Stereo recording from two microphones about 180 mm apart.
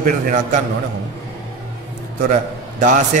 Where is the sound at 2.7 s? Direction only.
45° right (ahead or behind).